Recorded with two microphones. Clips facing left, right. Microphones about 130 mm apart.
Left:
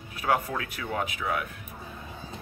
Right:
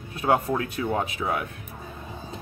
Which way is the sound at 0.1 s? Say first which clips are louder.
Right 4 dB; 25° right (ahead or behind).